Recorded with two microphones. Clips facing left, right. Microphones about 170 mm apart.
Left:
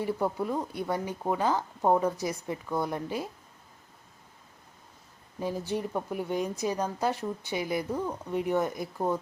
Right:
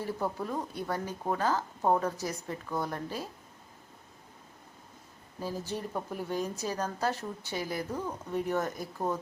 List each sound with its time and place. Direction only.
0.0 s speech: 15° left (ahead or behind)
5.4 s speech: 15° left (ahead or behind)